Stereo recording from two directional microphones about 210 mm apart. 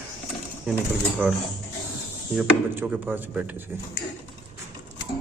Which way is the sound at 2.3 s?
5° right (ahead or behind).